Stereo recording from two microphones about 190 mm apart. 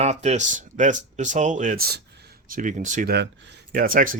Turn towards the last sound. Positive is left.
turn(degrees=-45)  # may be behind; listen again after turning